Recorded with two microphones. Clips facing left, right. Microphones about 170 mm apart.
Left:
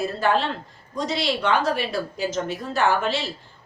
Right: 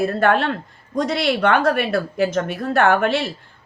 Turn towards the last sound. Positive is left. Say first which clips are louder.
# right 5 dB
turn(degrees=-60)  # may be behind; listen again after turning